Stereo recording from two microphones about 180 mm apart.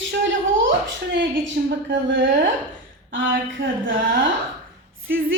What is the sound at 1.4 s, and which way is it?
Speech, 90° right.